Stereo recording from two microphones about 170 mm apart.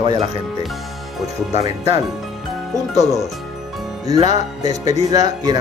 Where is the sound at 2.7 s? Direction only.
20° right (ahead or behind).